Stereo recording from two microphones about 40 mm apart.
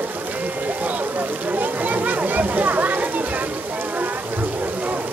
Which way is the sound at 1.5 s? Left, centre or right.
Right.